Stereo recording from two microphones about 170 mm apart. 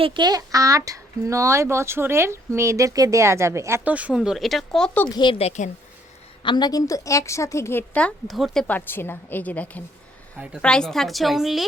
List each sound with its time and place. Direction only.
0.0 s speech: 25° right (ahead or behind); by 5.0 s 5° left (ahead or behind)
5.1 s a woman's voice: 30° left (ahead or behind)
6.4 s a woman's voice: 25° left (ahead or behind); by 9.8 s 10° left (ahead or behind)
10.3 s a woman's voice: 5° right (ahead or behind)